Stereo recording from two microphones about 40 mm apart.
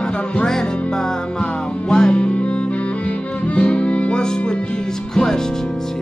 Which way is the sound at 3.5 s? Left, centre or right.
Left.